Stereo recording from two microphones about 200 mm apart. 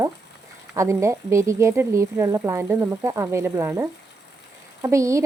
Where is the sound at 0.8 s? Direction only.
15° right (ahead or behind).